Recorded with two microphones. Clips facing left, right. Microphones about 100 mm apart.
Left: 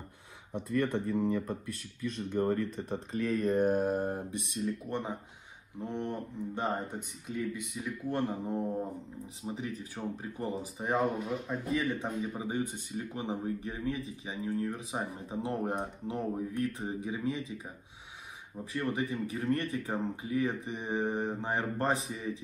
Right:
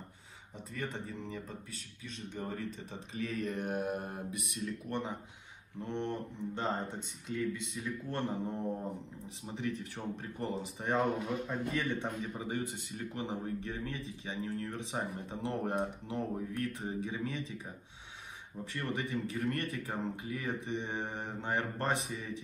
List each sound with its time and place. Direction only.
0.5 s speech: 65° left (ahead or behind); by 8.6 s 15° left (ahead or behind)
9.9 s speech: 10° left (ahead or behind)
12.4 s speech: 20° left (ahead or behind)
19.3 s speech: 20° left (ahead or behind)
21.1 s speech: 25° left (ahead or behind)